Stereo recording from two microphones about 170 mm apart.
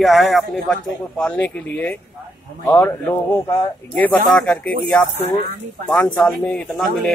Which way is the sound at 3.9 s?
5° left (ahead or behind).